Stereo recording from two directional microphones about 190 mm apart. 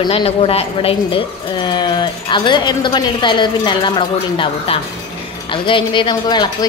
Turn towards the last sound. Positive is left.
turn(degrees=20)  # may be behind; listen again after turning